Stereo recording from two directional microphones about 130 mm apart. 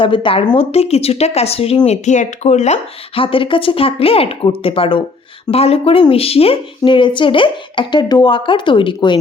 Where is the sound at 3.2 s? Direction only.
45° left (ahead or behind).